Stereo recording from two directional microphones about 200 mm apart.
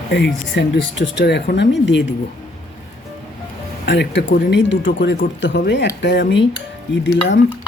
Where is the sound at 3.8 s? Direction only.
60° left (ahead or behind).